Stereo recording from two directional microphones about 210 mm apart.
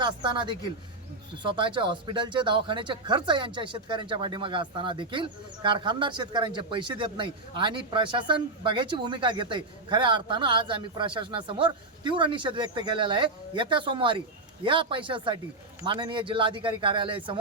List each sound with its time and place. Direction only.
0.0 s speech: 20° right (ahead or behind)